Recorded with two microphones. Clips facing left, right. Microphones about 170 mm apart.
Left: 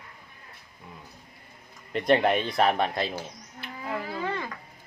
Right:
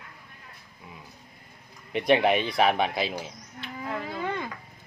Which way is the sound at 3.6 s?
10° left (ahead or behind).